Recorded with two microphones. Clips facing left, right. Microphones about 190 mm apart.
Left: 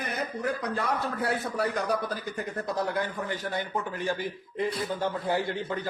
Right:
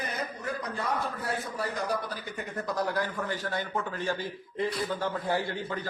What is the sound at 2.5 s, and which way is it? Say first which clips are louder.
A man's voice: even; 25° left (ahead or behind).